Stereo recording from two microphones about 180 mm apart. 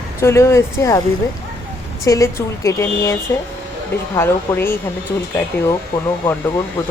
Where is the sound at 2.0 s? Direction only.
15° left (ahead or behind).